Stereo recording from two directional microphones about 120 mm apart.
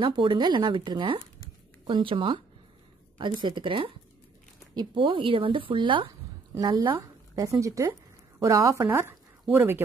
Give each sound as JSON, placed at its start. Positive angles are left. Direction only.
{"t": 0.0, "sound": "a woman's voice", "side_deg": -45}
{"t": 7.0, "sound": "speech", "side_deg": -30}